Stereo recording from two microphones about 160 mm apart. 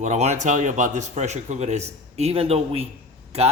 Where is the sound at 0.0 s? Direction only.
45° right (ahead or behind).